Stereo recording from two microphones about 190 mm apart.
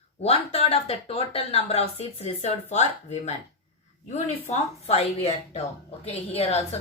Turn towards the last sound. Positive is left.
turn(degrees=30)  # may be behind; listen again after turning